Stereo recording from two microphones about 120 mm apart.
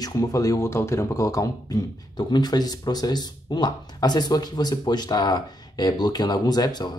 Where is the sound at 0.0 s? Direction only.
30° left (ahead or behind).